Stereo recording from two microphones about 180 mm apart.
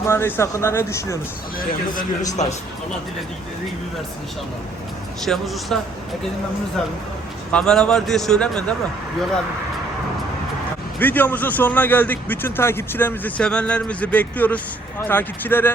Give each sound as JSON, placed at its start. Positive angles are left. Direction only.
{"t": 0.1, "sound": "a man's voice", "side_deg": 15}
{"t": 1.5, "sound": "a man's voice", "side_deg": 50}
{"t": 5.2, "sound": "a man's voice", "side_deg": 0}
{"t": 7.5, "sound": "a man's voice", "side_deg": 5}
{"t": 11.0, "sound": "a man's voice", "side_deg": 10}